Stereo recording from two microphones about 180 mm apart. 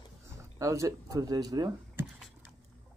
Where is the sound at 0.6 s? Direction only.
15° right (ahead or behind).